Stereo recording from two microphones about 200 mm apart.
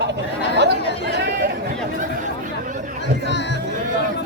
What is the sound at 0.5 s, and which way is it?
Chatter, 55° right (ahead or behind).